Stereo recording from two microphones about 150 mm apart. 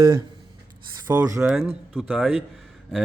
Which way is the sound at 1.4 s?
Centre (ahead or behind).